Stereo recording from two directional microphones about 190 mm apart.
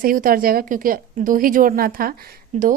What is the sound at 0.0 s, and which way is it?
A woman's voice, 50° right (ahead or behind).